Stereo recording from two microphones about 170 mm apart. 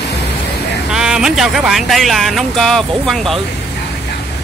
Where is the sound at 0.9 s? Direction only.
5° right (ahead or behind).